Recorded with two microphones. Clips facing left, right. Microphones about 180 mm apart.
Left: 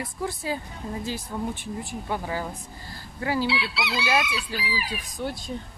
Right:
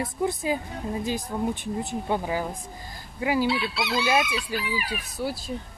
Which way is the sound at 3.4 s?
50° right (ahead or behind).